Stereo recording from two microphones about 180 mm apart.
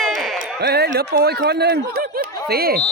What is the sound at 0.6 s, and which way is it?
Speech, 65° right (ahead or behind).